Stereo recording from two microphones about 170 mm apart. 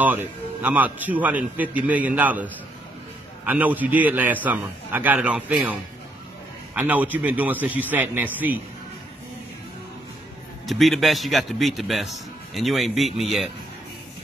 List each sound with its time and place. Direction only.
0.0 s a man's voice: 10° right (ahead or behind)
3.4 s a man's voice: 10° right (ahead or behind)
10.7 s a man's voice: centre (ahead or behind)